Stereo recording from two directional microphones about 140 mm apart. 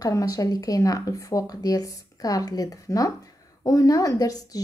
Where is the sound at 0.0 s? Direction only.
25° left (ahead or behind).